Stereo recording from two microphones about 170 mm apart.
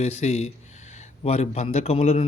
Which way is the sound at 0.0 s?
40° left (ahead or behind).